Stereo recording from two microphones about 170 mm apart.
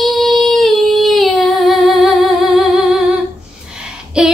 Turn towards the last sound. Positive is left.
turn(degrees=-5)  # may be behind; listen again after turning